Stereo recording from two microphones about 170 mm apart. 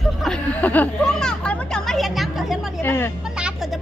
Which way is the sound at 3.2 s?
5° right (ahead or behind).